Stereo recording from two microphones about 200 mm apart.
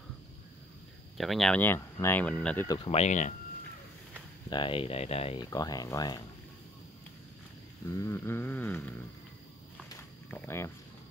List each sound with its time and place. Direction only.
1.1 s speech: centre (ahead or behind)
2.8 s speech: 30° left (ahead or behind)
4.5 s speech: 25° left (ahead or behind)
5.5 s speech: 20° left (ahead or behind)
7.9 s speech: 15° left (ahead or behind)
9.8 s a sound: 10° left (ahead or behind)